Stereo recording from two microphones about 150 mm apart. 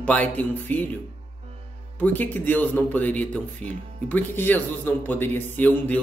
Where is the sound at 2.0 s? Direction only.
10° left (ahead or behind).